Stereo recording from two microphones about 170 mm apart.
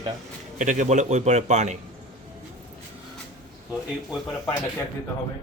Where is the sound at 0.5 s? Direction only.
45° right (ahead or behind).